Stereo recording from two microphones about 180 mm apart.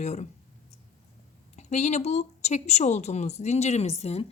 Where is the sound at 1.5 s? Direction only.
40° left (ahead or behind).